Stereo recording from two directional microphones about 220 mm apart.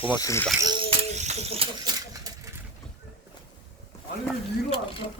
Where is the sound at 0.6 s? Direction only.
20° right (ahead or behind).